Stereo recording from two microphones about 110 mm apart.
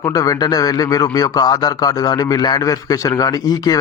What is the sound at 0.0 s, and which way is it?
A man's voice, 35° left (ahead or behind).